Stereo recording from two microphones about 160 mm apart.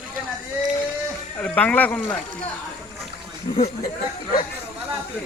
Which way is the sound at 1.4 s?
10° left (ahead or behind).